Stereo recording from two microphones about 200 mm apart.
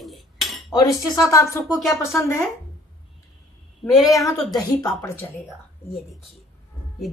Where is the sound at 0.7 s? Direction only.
20° left (ahead or behind).